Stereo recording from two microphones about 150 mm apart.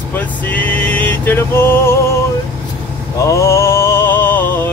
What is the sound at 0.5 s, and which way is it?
Music, 10° left (ahead or behind).